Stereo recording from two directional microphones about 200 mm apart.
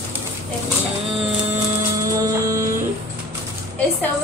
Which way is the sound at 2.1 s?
15° right (ahead or behind).